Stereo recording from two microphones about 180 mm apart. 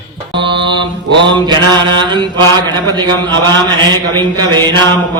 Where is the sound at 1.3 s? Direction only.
25° right (ahead or behind).